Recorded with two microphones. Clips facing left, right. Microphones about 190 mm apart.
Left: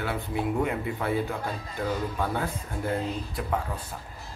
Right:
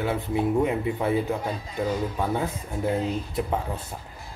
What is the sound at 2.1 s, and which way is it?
Speech, 15° right (ahead or behind).